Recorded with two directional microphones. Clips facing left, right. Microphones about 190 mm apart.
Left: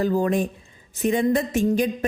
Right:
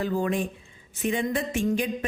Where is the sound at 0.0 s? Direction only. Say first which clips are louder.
Left 5 dB; 40° left (ahead or behind).